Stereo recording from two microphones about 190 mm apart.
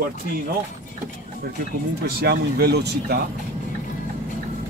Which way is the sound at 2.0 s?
60° right (ahead or behind).